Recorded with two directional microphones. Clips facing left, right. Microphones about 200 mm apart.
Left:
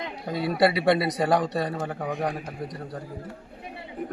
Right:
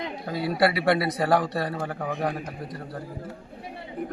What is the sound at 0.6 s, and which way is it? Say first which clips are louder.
Speech: left 1 dB; 20° left (ahead or behind).